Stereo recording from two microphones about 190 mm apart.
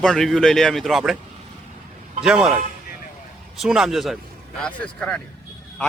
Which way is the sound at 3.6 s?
Centre (ahead or behind).